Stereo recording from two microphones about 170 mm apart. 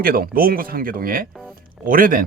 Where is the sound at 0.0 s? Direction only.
60° right (ahead or behind).